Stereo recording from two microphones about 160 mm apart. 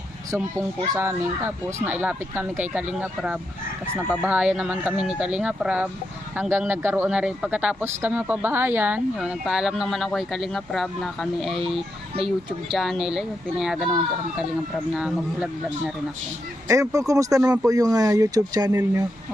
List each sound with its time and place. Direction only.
0.3 s speech: 20° right (ahead or behind); by 11.6 s centre (ahead or behind)
12.1 s speech: 35° right (ahead or behind)
12.7 s speech: centre (ahead or behind)
14.9 s speech: 5° right (ahead or behind)
16.6 s speech: 20° right (ahead or behind)